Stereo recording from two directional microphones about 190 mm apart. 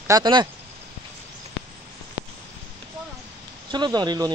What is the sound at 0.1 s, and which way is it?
Speech, 25° right (ahead or behind).